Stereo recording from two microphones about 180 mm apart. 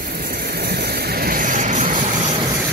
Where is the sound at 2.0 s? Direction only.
35° right (ahead or behind).